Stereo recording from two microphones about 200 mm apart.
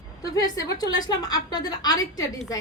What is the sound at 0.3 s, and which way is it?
A woman's voice, 20° left (ahead or behind).